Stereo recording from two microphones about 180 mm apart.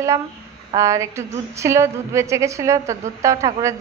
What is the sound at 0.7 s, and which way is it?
Speech, 15° right (ahead or behind).